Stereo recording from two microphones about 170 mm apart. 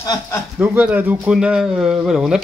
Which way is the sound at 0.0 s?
25° left (ahead or behind).